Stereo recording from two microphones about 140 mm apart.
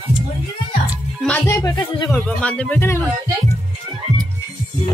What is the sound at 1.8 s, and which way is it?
Speech, 35° left (ahead or behind).